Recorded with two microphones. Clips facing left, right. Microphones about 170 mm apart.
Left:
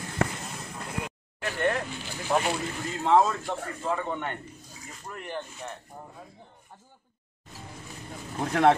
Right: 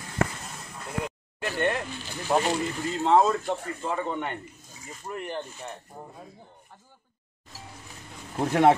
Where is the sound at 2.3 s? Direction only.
15° right (ahead or behind).